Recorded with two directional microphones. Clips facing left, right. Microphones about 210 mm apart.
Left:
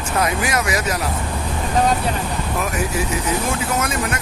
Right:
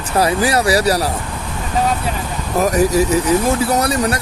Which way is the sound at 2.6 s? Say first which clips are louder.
Right 11 dB; 40° right (ahead or behind).